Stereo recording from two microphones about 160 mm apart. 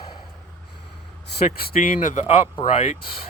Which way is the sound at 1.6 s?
65° left (ahead or behind).